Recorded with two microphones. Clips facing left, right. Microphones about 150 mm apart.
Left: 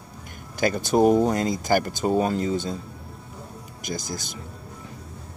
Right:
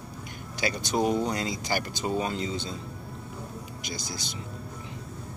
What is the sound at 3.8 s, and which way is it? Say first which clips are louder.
Speech: left 8 dB; 50° left (ahead or behind).